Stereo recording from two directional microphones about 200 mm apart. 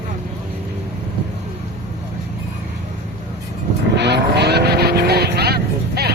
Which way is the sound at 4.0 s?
55° right (ahead or behind).